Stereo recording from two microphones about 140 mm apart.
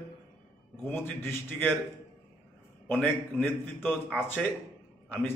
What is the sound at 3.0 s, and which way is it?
Speech, 10° left (ahead or behind).